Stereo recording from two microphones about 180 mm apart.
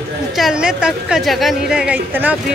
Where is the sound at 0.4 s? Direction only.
5° right (ahead or behind).